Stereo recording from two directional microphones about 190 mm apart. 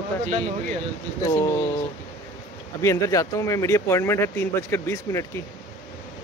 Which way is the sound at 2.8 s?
15° left (ahead or behind).